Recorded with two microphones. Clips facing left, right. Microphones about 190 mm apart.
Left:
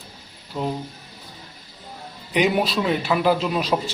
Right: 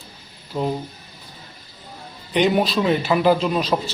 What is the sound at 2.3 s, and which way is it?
A man's voice, 5° left (ahead or behind).